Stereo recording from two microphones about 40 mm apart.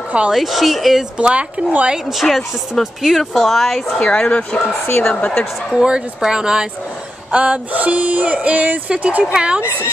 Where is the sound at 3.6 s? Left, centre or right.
Centre.